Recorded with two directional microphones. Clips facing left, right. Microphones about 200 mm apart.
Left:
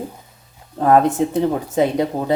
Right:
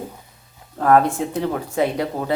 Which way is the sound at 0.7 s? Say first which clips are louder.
Left 2 dB; 20° left (ahead or behind).